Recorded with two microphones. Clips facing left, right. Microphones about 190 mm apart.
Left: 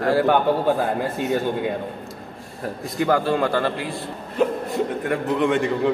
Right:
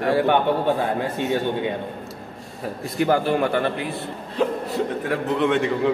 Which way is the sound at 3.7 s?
65° right (ahead or behind).